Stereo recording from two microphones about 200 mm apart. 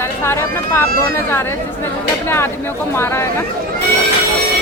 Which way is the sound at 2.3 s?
10° left (ahead or behind).